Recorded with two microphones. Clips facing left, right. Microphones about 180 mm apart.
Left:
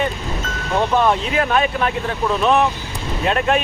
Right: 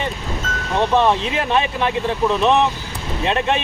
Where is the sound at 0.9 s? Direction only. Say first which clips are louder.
Even; 25° right (ahead or behind).